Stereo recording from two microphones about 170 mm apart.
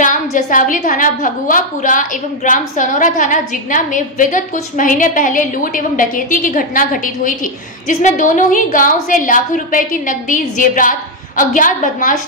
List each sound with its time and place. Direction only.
0.0 s a woman's voice: 50° left (ahead or behind)